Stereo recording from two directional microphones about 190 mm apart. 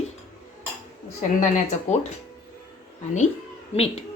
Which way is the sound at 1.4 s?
40° left (ahead or behind).